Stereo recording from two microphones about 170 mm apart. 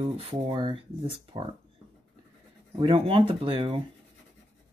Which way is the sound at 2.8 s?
30° right (ahead or behind).